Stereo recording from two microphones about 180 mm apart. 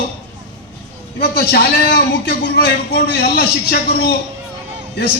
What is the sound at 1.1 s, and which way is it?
A man's voice, 60° left (ahead or behind).